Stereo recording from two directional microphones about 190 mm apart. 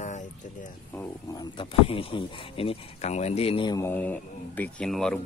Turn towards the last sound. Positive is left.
turn(degrees=5)  # may be behind; listen again after turning